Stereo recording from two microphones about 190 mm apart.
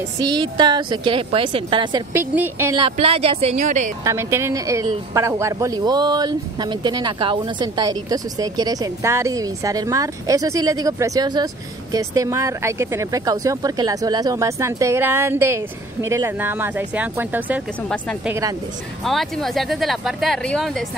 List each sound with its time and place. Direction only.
0.2 s a woman's voice: 25° right (ahead or behind)
2.1 s speech: 10° right (ahead or behind)
2.8 s speech: 30° right (ahead or behind)
4.0 s speech: 15° right (ahead or behind)
17.8 s speech: 5° left (ahead or behind)